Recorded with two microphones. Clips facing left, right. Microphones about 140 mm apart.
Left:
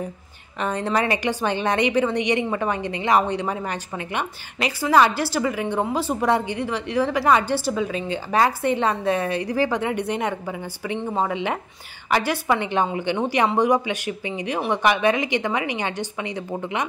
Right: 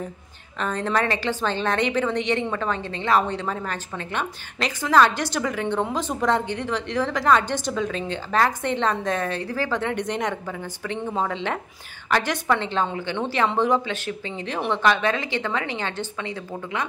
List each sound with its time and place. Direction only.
0.6 s a woman's voice: 10° left (ahead or behind)